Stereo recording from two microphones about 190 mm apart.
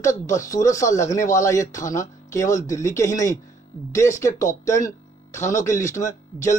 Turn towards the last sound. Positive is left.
turn(degrees=15)  # may be behind; listen again after turning